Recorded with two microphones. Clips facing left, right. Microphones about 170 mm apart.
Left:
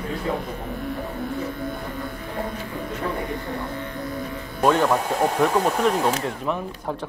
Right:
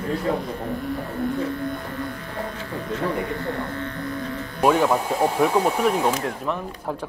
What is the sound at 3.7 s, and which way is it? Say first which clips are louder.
Music: right 1 dB; 10° left (ahead or behind).